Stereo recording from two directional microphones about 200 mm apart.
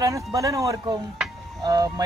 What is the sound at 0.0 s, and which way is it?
Speech, 15° right (ahead or behind).